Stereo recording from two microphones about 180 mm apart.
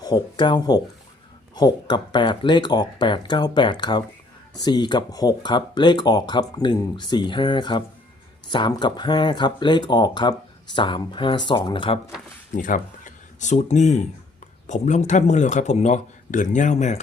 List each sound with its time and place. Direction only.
0.0 s speech: 25° left (ahead or behind)
12.5 s a man's voice: 45° left (ahead or behind)